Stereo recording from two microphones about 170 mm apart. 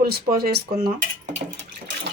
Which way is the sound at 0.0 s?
65° right (ahead or behind).